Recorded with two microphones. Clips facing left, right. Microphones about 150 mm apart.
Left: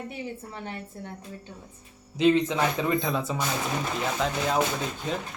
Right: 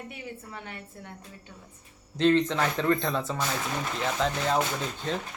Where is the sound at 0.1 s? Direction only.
30° left (ahead or behind).